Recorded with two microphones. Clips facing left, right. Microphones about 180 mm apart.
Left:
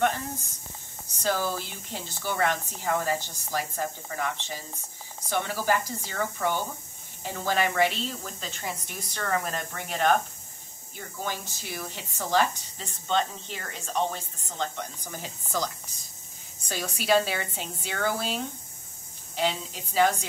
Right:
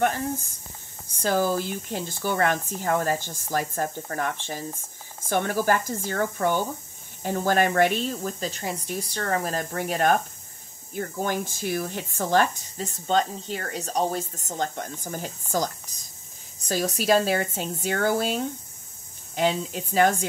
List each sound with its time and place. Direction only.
1.2 s speech: 45° right (ahead or behind)